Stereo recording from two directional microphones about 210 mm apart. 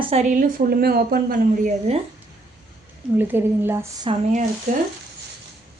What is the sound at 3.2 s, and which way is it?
Speech, 10° right (ahead or behind).